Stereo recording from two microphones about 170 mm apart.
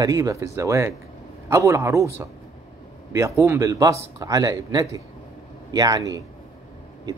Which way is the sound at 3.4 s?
20° right (ahead or behind).